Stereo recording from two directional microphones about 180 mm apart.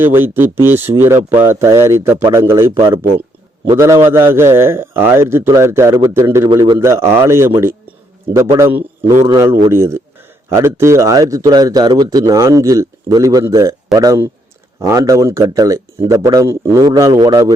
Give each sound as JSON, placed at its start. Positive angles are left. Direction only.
{"t": 0.0, "sound": "a man's voice", "side_deg": -10}
{"t": 3.8, "sound": "a man's voice", "side_deg": -15}